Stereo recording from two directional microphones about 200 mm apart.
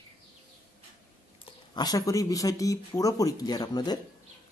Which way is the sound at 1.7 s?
20° left (ahead or behind).